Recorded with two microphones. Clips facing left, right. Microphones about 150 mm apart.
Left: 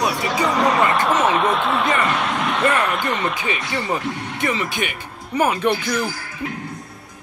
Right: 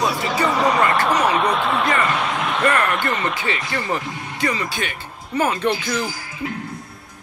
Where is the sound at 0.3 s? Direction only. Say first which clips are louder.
Even; centre (ahead or behind).